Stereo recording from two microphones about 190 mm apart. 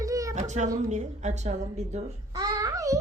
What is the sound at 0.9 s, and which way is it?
A woman's voice, 40° right (ahead or behind).